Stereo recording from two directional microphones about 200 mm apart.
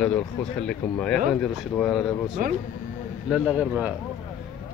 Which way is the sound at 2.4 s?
45° right (ahead or behind).